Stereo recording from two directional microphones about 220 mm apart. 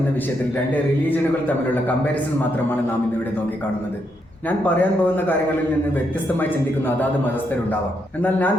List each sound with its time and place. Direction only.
0.7 s a man's voice: 10° left (ahead or behind)
4.4 s a man's voice: 10° left (ahead or behind)
6.4 s a man's voice: 10° left (ahead or behind)
8.2 s a man's voice: 10° left (ahead or behind)